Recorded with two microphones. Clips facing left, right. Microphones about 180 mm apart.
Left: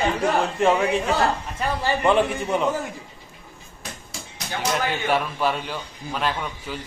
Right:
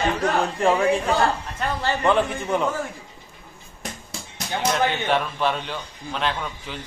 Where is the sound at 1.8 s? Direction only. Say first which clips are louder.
Left 1 dB; 15° left (ahead or behind).